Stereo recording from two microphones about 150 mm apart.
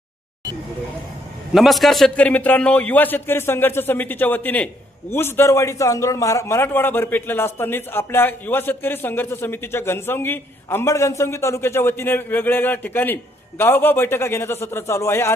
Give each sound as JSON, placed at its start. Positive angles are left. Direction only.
{"t": 1.5, "sound": "a man's voice", "side_deg": 0}